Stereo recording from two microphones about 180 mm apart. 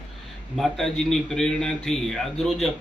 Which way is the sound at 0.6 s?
5° left (ahead or behind).